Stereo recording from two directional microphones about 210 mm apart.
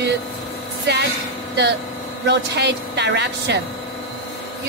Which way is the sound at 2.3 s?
55° right (ahead or behind).